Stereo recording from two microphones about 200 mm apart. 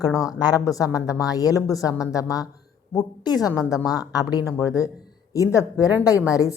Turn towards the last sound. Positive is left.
turn(degrees=15)  # may be behind; listen again after turning